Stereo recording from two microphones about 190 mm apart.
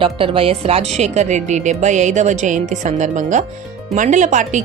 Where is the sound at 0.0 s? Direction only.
30° right (ahead or behind).